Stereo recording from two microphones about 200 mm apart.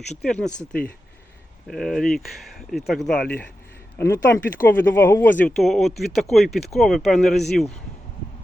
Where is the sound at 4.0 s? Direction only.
15° left (ahead or behind).